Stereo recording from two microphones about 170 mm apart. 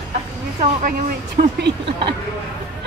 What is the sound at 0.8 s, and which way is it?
Speech, 70° right (ahead or behind).